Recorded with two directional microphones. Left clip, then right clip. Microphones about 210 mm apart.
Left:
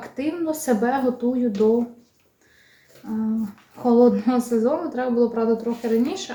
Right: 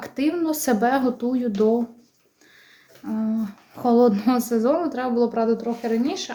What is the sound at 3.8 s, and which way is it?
A woman's voice, 40° right (ahead or behind).